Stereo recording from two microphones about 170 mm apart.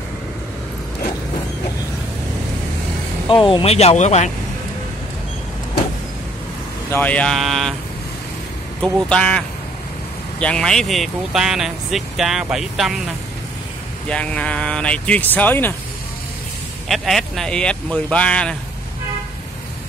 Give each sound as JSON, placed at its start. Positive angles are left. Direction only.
{"t": 3.4, "sound": "speech", "side_deg": 35}
{"t": 6.9, "sound": "speech", "side_deg": 10}
{"t": 8.8, "sound": "speech", "side_deg": 5}
{"t": 10.4, "sound": "speech", "side_deg": 5}
{"t": 14.0, "sound": "speech", "side_deg": 5}
{"t": 16.8, "sound": "speech", "side_deg": 0}